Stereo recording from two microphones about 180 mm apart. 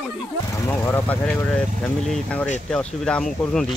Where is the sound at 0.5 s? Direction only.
15° left (ahead or behind).